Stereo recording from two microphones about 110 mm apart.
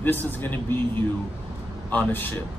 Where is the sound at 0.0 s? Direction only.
15° left (ahead or behind).